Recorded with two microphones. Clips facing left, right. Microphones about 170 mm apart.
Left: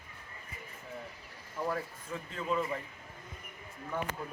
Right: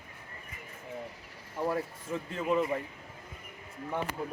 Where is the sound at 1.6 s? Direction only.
25° right (ahead or behind).